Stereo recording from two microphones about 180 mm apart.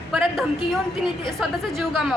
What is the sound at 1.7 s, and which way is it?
Speech, centre (ahead or behind).